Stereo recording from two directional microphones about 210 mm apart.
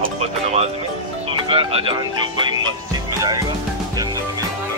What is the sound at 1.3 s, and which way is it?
Music, 25° right (ahead or behind).